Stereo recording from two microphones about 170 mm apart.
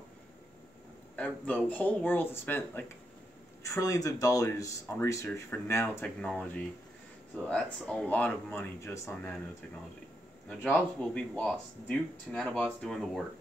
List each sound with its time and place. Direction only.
1.1 s speech: 10° left (ahead or behind)
10.6 s speech: 5° left (ahead or behind)